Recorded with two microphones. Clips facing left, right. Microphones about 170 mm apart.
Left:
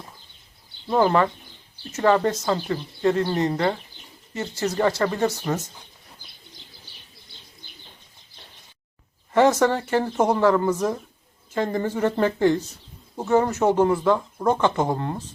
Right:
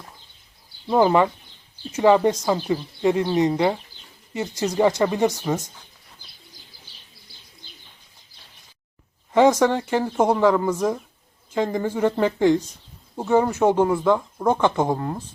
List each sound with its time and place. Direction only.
0.9 s a woman's voice: 15° right (ahead or behind)
9.3 s a woman's voice: 10° right (ahead or behind)
14.9 s speech: centre (ahead or behind)